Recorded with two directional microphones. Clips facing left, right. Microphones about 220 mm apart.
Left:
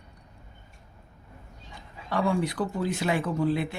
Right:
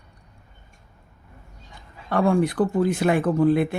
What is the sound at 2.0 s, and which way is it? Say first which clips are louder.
Speech: right 6 dB; 55° right (ahead or behind).